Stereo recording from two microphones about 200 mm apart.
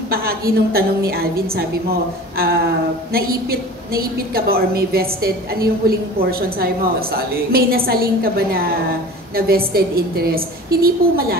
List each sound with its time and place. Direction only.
0.1 s a woman's voice: 50° right (ahead or behind)
9.7 s a woman's voice: 50° right (ahead or behind)